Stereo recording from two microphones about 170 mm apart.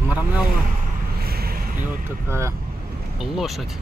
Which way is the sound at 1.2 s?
65° right (ahead or behind).